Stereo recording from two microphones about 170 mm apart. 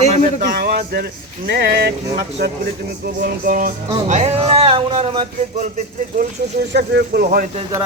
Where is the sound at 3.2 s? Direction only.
55° right (ahead or behind).